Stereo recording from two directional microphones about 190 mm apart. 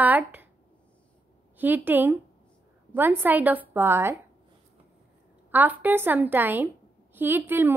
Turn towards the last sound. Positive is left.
turn(degrees=-10)  # may be behind; listen again after turning